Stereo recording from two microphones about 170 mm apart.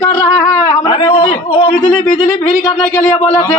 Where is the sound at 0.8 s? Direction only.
30° left (ahead or behind).